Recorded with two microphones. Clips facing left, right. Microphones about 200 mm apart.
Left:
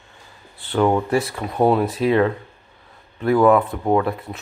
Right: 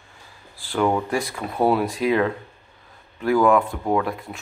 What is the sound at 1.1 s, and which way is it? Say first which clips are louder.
Speech: left 4 dB; centre (ahead or behind).